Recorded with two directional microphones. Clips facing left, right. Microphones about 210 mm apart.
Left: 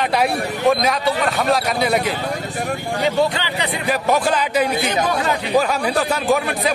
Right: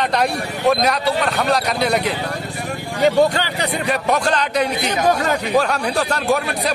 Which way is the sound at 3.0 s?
45° right (ahead or behind).